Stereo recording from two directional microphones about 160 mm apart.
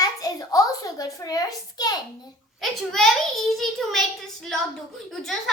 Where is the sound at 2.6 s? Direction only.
Centre (ahead or behind).